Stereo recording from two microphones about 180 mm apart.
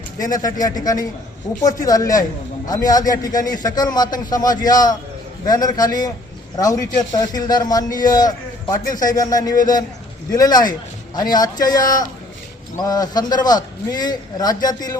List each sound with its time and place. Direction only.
0.2 s a man's voice: 20° left (ahead or behind)
8.8 s a man's voice: 50° left (ahead or behind)
9.0 s a man's voice: 20° left (ahead or behind)